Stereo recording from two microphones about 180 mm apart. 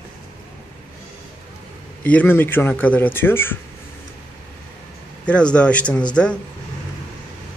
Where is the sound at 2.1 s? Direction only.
10° left (ahead or behind).